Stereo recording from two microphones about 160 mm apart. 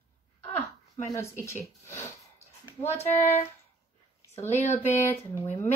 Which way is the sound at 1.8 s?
15° left (ahead or behind).